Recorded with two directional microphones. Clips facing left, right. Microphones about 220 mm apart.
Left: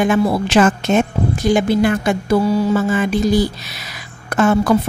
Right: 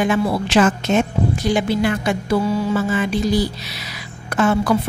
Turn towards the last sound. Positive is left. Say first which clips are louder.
# left 3 dB
turn(degrees=45)  # may be behind; listen again after turning